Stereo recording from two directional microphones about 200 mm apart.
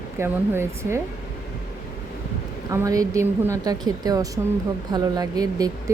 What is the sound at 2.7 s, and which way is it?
Speech, 15° right (ahead or behind).